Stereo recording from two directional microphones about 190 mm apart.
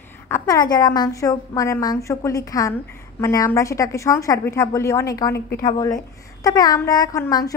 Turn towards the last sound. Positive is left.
turn(degrees=20)  # may be behind; listen again after turning